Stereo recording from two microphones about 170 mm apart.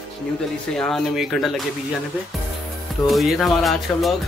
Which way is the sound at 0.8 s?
Centre (ahead or behind).